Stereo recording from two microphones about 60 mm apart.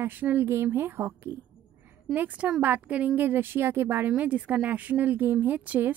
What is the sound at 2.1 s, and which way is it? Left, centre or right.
A woman's voice, right.